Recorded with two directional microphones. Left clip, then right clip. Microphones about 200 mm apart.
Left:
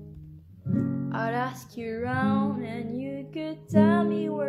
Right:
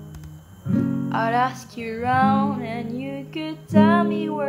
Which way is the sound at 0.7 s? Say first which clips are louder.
Right 5 dB; 25° right (ahead or behind).